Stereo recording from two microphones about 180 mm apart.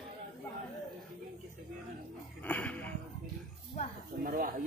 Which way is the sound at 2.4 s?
5° left (ahead or behind).